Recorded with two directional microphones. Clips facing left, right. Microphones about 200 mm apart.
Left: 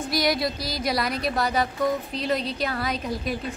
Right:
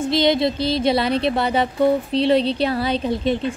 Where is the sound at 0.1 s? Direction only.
25° right (ahead or behind).